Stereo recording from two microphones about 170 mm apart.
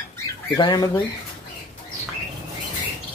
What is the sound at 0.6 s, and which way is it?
Speech, 25° left (ahead or behind).